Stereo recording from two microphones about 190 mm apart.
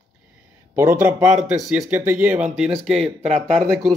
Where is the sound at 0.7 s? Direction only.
10° right (ahead or behind).